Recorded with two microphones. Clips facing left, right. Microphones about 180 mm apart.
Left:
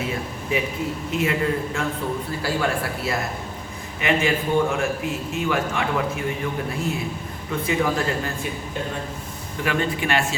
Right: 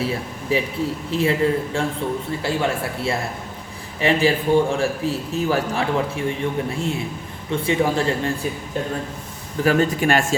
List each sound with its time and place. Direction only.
0.5 s a man's voice: 35° right (ahead or behind)
9.6 s speech: 40° right (ahead or behind)